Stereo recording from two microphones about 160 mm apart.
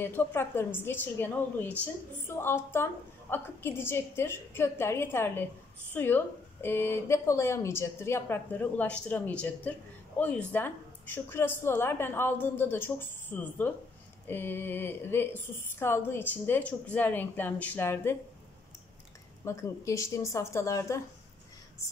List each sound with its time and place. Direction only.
0.0 s speech: 15° left (ahead or behind)
19.4 s a woman's voice: 20° left (ahead or behind)